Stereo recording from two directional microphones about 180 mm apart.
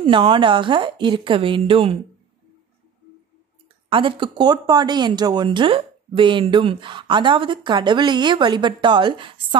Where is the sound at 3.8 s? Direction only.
30° right (ahead or behind).